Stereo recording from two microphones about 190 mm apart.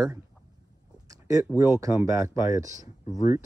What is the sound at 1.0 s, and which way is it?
Speech, 15° right (ahead or behind).